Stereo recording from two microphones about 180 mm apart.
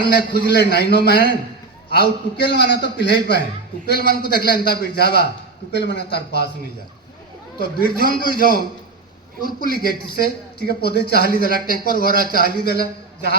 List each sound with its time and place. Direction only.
0.1 s a man's voice: 55° left (ahead or behind)
7.6 s a man's voice: 55° left (ahead or behind)